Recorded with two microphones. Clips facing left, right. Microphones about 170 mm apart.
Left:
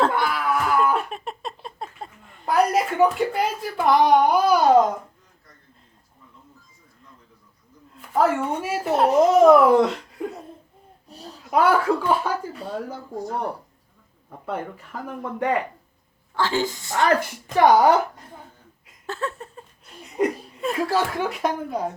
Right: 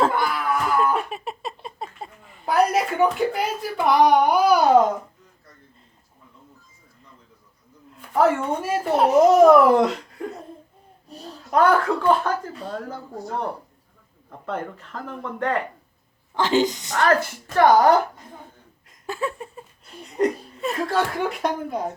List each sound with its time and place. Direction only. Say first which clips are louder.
0.0 s a sound: even; centre (ahead or behind)
7.9 s speech: right 1 dB; centre (ahead or behind)
11.5 s speech: even; 5° left (ahead or behind)
16.3 s a woman's voice: right 4 dB; 20° right (ahead or behind)
17.0 s speech: right 1 dB; 15° left (ahead or behind)
19.0 s a sound: right 2 dB; 10° right (ahead or behind)
20.7 s speech: even; 5° left (ahead or behind)